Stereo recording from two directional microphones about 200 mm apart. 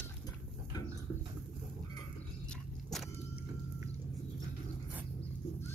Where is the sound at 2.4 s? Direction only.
5° left (ahead or behind).